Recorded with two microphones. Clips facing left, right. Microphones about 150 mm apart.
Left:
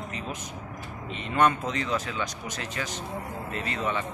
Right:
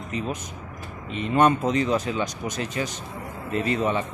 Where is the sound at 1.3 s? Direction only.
20° right (ahead or behind).